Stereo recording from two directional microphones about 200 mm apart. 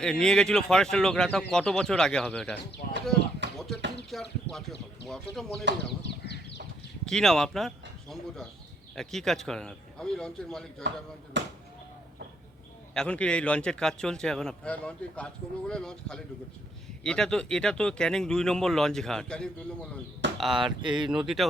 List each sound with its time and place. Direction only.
0.0 s speech: 5° left (ahead or behind)
2.8 s a sound: 50° left (ahead or behind)
3.4 s basketball bounce: 65° right (ahead or behind)
4.1 s speech: centre (ahead or behind)
6.1 s a sound: 60° left (ahead or behind)
7.0 s speech: centre (ahead or behind)
9.0 s speech: centre (ahead or behind)
11.3 s speech: 65° right (ahead or behind)
12.9 s speech: 5° left (ahead or behind)
20.2 s chop: 65° right (ahead or behind)
20.6 s speech: 25° right (ahead or behind)
21.1 s speech: 5° right (ahead or behind)